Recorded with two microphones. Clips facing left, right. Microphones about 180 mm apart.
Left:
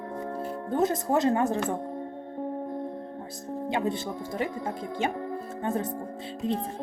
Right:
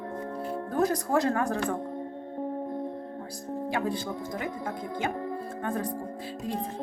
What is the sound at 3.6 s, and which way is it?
Speech, 20° left (ahead or behind).